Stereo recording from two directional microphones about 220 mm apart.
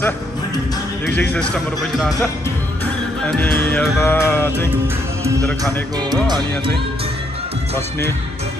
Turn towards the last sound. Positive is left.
turn(degrees=-20)  # may be behind; listen again after turning